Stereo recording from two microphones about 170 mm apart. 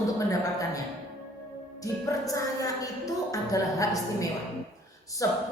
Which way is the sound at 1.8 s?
20° left (ahead or behind).